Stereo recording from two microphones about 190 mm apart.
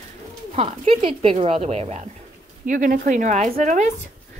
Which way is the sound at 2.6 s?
45° right (ahead or behind).